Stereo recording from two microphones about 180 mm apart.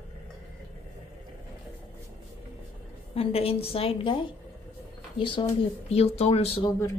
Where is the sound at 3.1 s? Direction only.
35° left (ahead or behind).